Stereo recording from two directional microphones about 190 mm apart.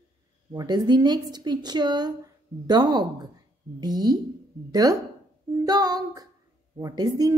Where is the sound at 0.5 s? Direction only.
20° right (ahead or behind).